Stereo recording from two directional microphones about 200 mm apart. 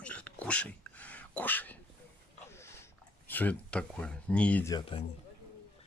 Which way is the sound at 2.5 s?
15° left (ahead or behind).